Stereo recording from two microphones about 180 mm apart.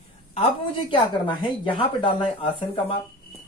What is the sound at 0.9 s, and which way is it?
A woman's voice, 25° left (ahead or behind).